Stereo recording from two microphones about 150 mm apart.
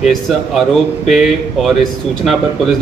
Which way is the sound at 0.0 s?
Centre (ahead or behind).